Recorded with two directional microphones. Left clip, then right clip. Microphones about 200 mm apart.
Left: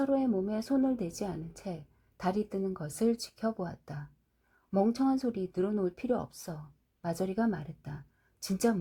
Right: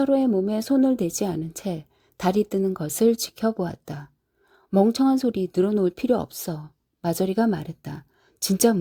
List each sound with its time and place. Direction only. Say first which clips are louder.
0.0 s speech: right 9 dB; 35° right (ahead or behind)